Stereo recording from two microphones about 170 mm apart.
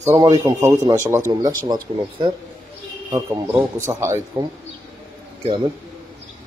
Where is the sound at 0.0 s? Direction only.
20° right (ahead or behind).